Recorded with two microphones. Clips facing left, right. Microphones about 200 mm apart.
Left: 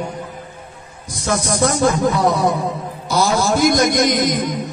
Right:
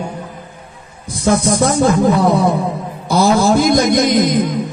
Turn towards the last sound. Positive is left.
turn(degrees=-55)  # may be behind; listen again after turning